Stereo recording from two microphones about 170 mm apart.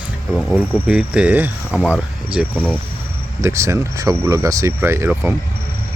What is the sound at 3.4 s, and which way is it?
Speech, 15° right (ahead or behind).